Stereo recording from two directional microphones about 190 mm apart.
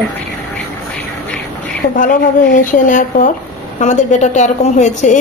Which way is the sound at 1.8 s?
40° left (ahead or behind).